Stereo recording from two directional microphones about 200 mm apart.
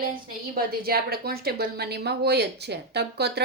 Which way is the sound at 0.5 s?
50° right (ahead or behind).